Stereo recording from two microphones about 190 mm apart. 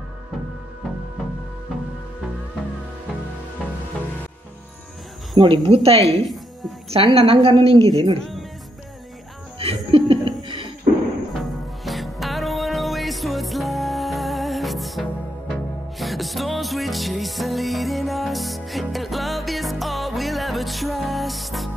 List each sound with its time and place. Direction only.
5.3 s a woman's voice: 25° right (ahead or behind)
8.2 s music: centre (ahead or behind)
9.8 s chuckle: 30° right (ahead or behind)
11.3 s music: centre (ahead or behind)